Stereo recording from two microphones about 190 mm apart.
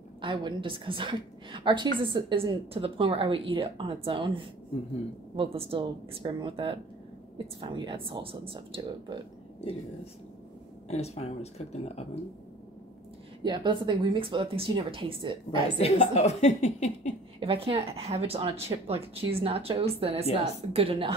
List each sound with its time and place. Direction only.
0.2 s speech: 25° right (ahead or behind)
10.9 s speech: 35° left (ahead or behind)
13.4 s speech: 25° right (ahead or behind)
15.8 s speech: 35° left (ahead or behind)
17.4 s speech: 30° right (ahead or behind)